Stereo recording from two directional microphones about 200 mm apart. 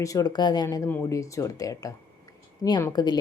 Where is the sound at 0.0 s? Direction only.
15° left (ahead or behind).